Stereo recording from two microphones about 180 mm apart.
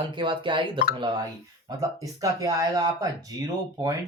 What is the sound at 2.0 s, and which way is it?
Speech, 20° right (ahead or behind).